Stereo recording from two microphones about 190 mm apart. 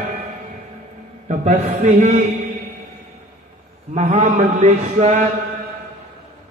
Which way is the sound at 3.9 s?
35° right (ahead or behind).